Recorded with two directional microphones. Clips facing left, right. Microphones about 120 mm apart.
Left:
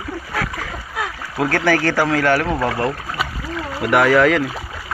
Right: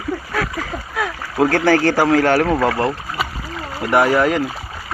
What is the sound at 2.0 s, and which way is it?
Speech, 25° right (ahead or behind).